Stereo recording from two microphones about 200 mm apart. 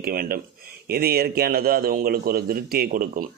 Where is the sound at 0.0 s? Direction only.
50° right (ahead or behind).